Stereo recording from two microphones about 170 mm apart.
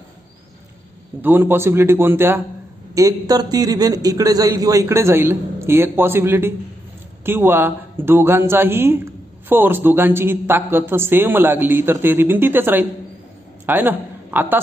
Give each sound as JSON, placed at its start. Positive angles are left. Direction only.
{"t": 1.2, "sound": "a man's voice", "side_deg": -15}